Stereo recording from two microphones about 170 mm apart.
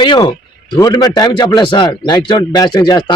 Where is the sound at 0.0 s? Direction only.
25° left (ahead or behind).